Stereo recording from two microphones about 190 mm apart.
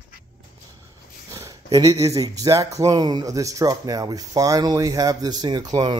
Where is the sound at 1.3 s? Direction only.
20° right (ahead or behind).